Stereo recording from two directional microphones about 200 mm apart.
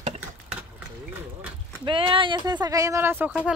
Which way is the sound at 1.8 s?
25° right (ahead or behind).